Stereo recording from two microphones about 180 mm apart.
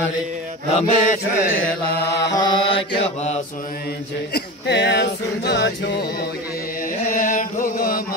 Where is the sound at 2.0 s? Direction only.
70° left (ahead or behind).